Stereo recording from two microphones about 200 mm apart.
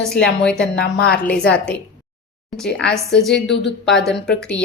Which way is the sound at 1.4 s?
55° left (ahead or behind).